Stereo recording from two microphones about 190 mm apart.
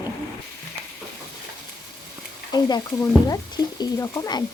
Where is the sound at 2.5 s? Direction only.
20° left (ahead or behind).